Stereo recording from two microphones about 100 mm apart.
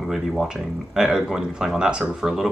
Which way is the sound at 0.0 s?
5° right (ahead or behind).